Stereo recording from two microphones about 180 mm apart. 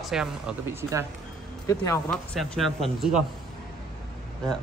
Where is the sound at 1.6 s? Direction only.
15° left (ahead or behind).